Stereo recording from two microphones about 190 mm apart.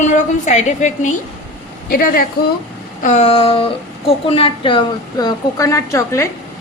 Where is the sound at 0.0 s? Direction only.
40° left (ahead or behind).